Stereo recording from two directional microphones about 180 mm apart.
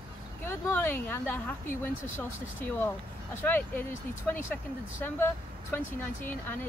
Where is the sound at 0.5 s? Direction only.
15° left (ahead or behind).